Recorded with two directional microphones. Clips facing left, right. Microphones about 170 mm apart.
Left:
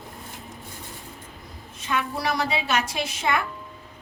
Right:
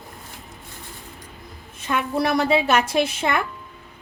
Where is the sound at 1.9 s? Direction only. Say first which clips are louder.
Right 5 dB; 55° right (ahead or behind).